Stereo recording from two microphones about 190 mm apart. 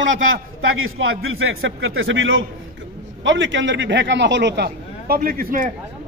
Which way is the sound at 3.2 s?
75° right (ahead or behind).